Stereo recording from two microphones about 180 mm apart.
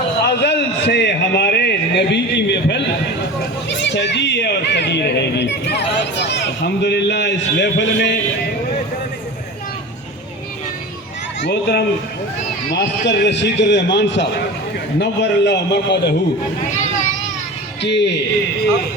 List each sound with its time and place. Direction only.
0.3 s a man's voice: 70° left (ahead or behind)
11.4 s speech: 65° left (ahead or behind)
17.8 s speech: 75° left (ahead or behind)